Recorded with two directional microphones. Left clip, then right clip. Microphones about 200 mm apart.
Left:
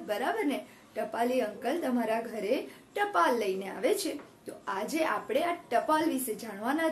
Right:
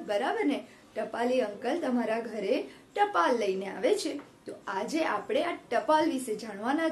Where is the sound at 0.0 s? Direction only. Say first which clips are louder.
Right 2 dB; centre (ahead or behind).